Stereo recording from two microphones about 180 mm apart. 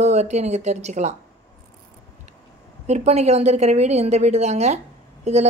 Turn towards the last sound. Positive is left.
turn(degrees=-40)  # may be behind; listen again after turning